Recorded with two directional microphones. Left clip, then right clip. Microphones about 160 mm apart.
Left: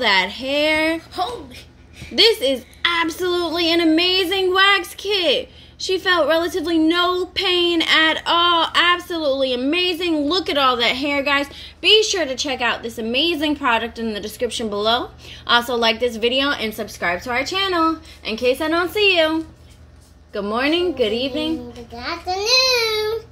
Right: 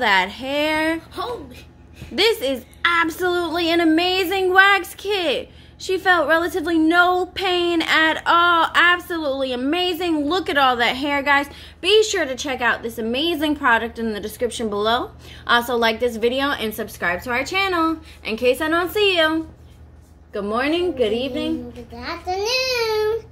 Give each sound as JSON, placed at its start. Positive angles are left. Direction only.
{"t": 0.0, "sound": "a woman's voice", "side_deg": 10}
{"t": 2.1, "sound": "a woman's voice", "side_deg": 10}
{"t": 21.9, "sound": "a child's voice", "side_deg": 60}